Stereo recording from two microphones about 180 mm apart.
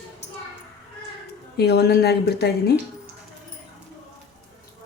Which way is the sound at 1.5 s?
65° left (ahead or behind).